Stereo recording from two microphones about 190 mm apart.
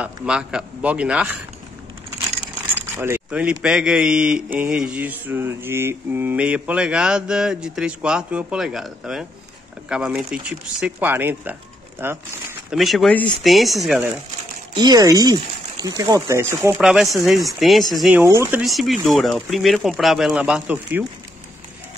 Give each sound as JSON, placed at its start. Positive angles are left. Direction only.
{"t": 0.0, "sound": "speech", "side_deg": -5}
{"t": 2.7, "sound": "speech", "side_deg": -10}
{"t": 12.7, "sound": "speech", "side_deg": 0}
{"t": 14.7, "sound": "speech", "side_deg": -20}
{"t": 16.7, "sound": "speech", "side_deg": 0}